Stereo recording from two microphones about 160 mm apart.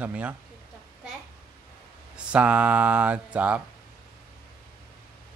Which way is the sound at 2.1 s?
5° right (ahead or behind).